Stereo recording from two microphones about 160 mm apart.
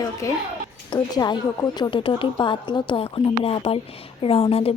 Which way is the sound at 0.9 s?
25° left (ahead or behind).